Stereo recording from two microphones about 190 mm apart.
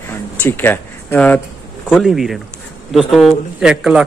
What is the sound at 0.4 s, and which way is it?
Speech, 10° left (ahead or behind).